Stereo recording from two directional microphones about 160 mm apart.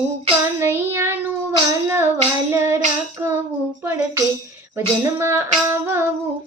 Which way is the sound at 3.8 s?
15° right (ahead or behind).